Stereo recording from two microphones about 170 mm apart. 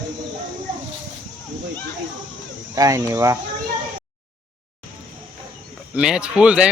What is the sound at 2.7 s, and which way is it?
Speech, 20° right (ahead or behind).